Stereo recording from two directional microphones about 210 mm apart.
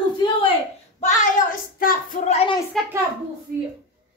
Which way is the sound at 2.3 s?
25° left (ahead or behind).